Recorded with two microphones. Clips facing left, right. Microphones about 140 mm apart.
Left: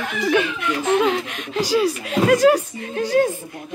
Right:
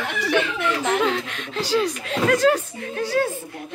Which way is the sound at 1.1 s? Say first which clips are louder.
Left 3 dB; 15° left (ahead or behind).